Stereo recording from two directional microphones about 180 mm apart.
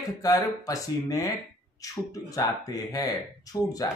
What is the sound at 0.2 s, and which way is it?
Speech, 20° left (ahead or behind).